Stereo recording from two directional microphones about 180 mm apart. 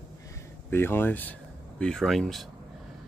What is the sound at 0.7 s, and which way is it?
Speech, 10° left (ahead or behind).